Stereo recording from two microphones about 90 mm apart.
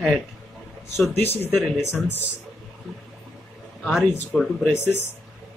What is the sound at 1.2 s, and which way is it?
Speech, 25° left (ahead or behind).